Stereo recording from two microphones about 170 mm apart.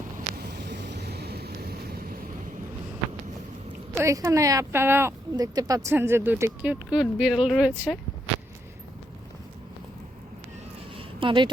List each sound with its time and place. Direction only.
0.3 s boat: 75° right (ahead or behind)
3.9 s speech: 20° right (ahead or behind); by 7.9 s centre (ahead or behind)
10.9 s a sound: 30° right (ahead or behind)